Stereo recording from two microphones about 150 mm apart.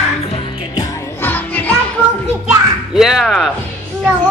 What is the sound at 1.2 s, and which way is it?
Music, 15° left (ahead or behind).